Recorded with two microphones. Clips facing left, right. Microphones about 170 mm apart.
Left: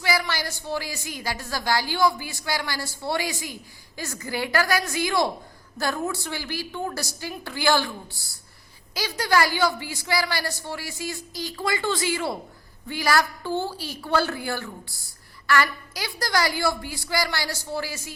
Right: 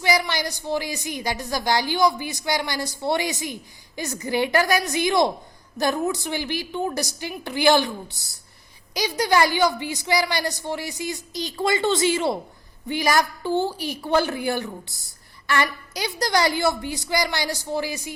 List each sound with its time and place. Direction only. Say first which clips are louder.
0.0 s a woman's voice: right 3 dB; 20° right (ahead or behind)